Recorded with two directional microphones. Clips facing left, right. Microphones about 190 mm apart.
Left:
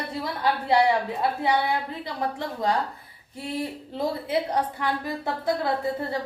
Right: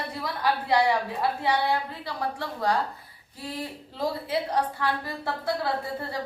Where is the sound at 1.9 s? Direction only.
20° left (ahead or behind).